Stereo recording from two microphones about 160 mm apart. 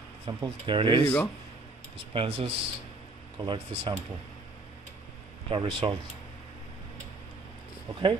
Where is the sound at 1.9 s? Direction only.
35° right (ahead or behind).